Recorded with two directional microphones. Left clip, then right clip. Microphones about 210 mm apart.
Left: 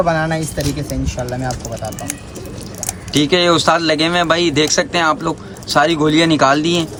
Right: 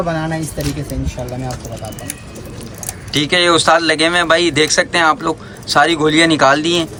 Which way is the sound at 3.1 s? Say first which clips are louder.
Right 1 dB; 20° left (ahead or behind).